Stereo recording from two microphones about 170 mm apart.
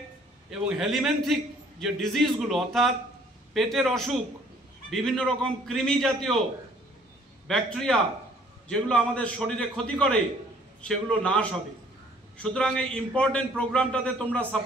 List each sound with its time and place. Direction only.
0.5 s a man's voice: 5° right (ahead or behind)
7.4 s a man's voice: 5° left (ahead or behind)